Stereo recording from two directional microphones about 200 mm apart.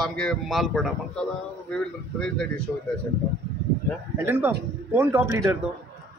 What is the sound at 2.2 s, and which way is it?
Speech, 5° left (ahead or behind).